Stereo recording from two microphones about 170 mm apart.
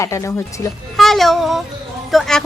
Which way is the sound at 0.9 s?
Centre (ahead or behind).